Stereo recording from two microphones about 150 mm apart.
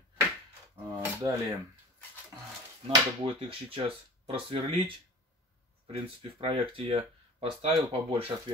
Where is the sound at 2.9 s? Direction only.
35° right (ahead or behind).